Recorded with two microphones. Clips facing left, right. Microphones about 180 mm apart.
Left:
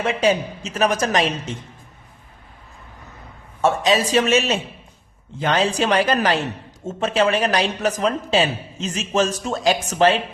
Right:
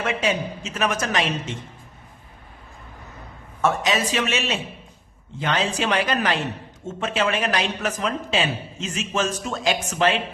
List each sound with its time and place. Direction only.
0.0 s a man's voice: 35° left (ahead or behind)
3.6 s a man's voice: 30° left (ahead or behind)